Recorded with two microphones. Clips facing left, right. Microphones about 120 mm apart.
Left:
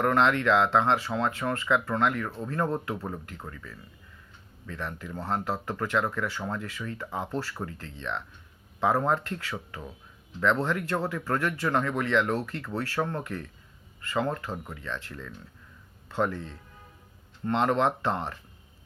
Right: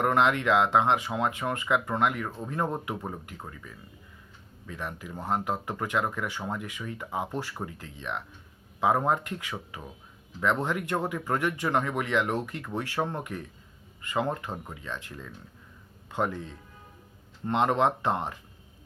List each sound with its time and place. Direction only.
0.0 s speech: 20° right (ahead or behind)